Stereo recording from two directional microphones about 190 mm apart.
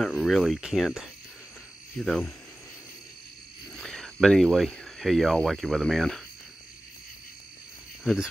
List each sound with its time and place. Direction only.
0.0 s speech: centre (ahead or behind)
3.7 s speech: centre (ahead or behind)
8.0 s speech: centre (ahead or behind)